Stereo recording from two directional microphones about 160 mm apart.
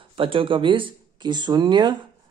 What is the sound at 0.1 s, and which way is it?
Speech, 35° right (ahead or behind).